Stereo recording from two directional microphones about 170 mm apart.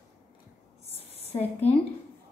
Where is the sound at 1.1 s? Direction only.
35° left (ahead or behind).